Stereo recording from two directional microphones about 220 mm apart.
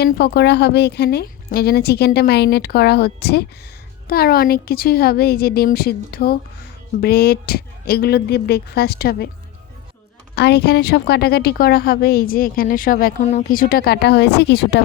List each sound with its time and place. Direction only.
0.0 s a woman's voice: 50° left (ahead or behind)
10.3 s a woman's voice: 50° left (ahead or behind)